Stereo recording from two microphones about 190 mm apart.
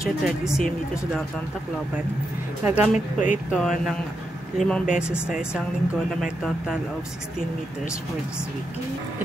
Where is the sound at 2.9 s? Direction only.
40° left (ahead or behind).